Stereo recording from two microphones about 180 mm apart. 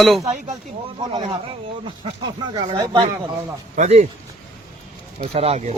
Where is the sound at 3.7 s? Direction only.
45° right (ahead or behind).